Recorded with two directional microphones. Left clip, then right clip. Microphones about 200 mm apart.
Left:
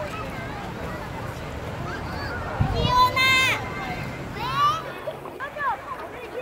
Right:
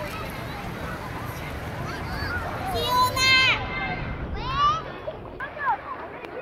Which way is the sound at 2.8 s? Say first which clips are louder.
Left 3 dB; 50° right (ahead or behind).